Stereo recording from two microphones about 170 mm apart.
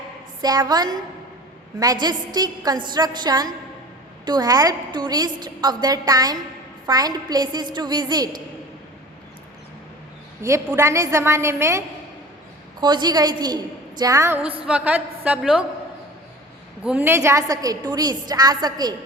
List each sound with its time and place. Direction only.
0.4 s a woman's voice: 25° right (ahead or behind)
10.4 s a woman's voice: 15° right (ahead or behind)
12.8 s a woman's voice: 25° right (ahead or behind); by 15.6 s 5° right (ahead or behind)
16.8 s a woman's voice: 10° right (ahead or behind)